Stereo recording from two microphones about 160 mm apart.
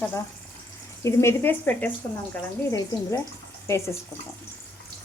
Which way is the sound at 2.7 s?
20° left (ahead or behind).